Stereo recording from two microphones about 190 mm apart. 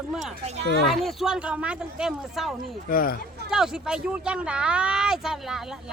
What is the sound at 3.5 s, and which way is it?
Speech, 5° right (ahead or behind).